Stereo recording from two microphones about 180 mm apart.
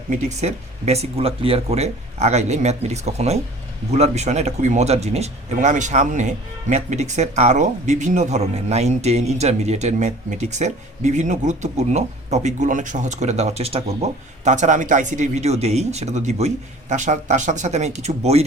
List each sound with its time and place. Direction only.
0.1 s speech: 40° right (ahead or behind)